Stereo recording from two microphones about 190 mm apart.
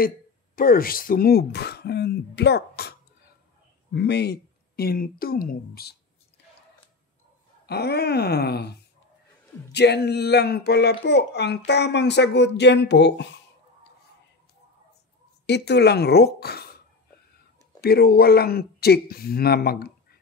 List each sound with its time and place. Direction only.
0.6 s a child's voice: 50° left (ahead or behind)
7.6 s a child's voice: 60° left (ahead or behind)
15.4 s a child's voice: 65° left (ahead or behind)
17.7 s a child's voice: 55° left (ahead or behind)